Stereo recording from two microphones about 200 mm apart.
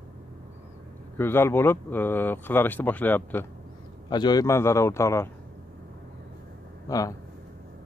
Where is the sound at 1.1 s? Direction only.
10° left (ahead or behind).